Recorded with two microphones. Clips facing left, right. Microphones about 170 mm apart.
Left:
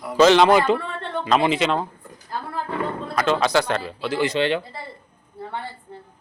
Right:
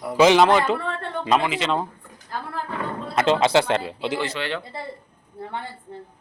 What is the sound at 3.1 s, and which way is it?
A woman's voice, 25° right (ahead or behind).